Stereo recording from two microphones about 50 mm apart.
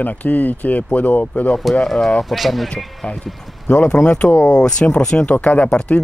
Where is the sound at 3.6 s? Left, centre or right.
Left.